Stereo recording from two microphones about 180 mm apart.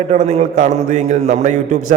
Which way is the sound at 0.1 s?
35° right (ahead or behind).